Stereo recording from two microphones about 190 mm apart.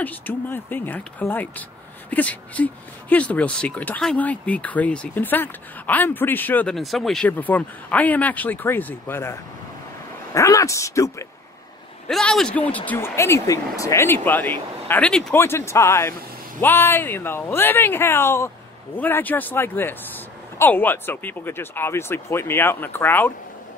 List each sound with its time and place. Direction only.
0.0 s speech: 10° left (ahead or behind)
12.1 s speech: centre (ahead or behind)